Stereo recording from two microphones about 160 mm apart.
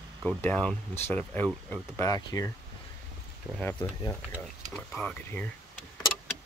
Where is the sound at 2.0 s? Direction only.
25° left (ahead or behind).